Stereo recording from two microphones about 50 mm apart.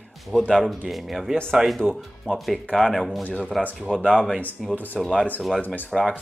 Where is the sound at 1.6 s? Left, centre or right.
Centre.